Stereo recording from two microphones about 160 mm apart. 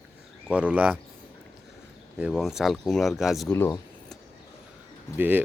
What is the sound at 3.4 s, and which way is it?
Speech, 15° left (ahead or behind).